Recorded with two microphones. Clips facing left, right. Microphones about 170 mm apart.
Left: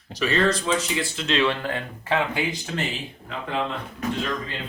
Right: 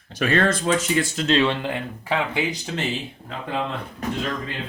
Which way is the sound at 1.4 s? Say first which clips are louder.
Right 1 dB; 20° right (ahead or behind).